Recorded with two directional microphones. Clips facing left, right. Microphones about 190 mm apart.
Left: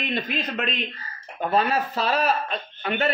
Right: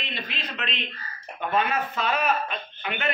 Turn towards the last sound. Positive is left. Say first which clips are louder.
# left 6 dB
turn(degrees=35)  # may be behind; listen again after turning